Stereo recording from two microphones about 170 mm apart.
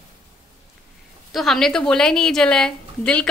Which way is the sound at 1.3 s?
Centre (ahead or behind).